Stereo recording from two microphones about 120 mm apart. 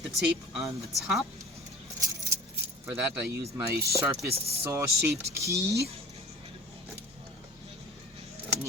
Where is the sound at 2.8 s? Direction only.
20° right (ahead or behind).